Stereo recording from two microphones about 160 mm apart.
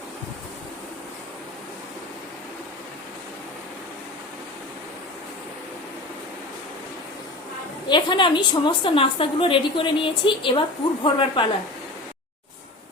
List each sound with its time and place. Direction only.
7.9 s a woman's voice: 30° left (ahead or behind)